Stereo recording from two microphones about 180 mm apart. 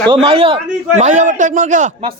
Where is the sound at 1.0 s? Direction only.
45° right (ahead or behind).